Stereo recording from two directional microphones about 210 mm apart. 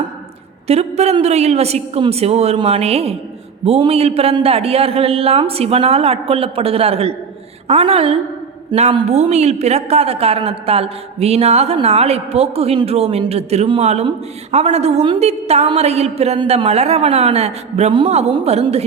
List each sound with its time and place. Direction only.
0.7 s a man's voice: 30° right (ahead or behind)